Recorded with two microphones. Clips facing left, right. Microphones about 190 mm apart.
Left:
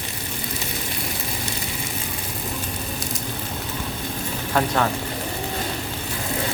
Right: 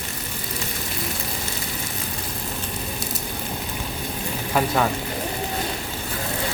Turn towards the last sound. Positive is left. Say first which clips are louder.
# even
turn(degrees=-5)  # may be behind; listen again after turning